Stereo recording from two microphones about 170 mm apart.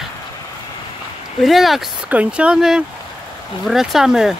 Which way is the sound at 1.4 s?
Centre (ahead or behind).